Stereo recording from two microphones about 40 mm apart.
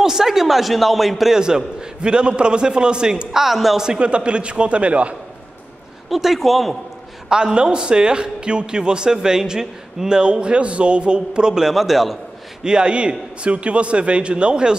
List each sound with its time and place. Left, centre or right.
0.0 s a man's voice: centre
1.3 s a man's voice: centre
6.0 s a man's voice: centre
7.2 s a man's voice: centre
11.7 s a man's voice: centre
12.6 s a man's voice: right